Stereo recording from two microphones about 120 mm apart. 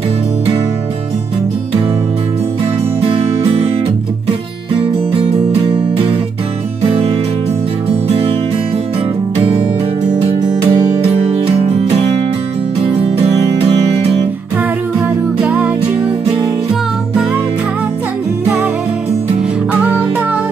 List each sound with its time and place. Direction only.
3.0 s music: 60° right (ahead or behind)
5.1 s music: 50° right (ahead or behind)
10.2 s music: 55° right (ahead or behind)
15.4 s music: 10° right (ahead or behind)
19.7 s music: 15° right (ahead or behind)